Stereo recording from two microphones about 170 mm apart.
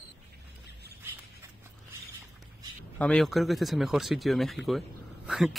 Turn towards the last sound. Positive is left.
turn(degrees=-5)  # may be behind; listen again after turning